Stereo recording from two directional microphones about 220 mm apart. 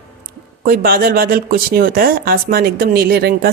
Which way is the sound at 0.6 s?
40° right (ahead or behind).